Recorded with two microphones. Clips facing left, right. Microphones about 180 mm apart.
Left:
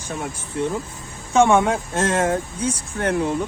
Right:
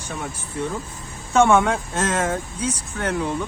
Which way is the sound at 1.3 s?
15° left (ahead or behind).